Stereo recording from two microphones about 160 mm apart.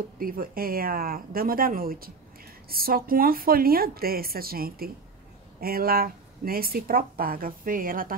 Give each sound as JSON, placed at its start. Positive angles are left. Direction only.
{"t": 0.2, "sound": "speech", "side_deg": -65}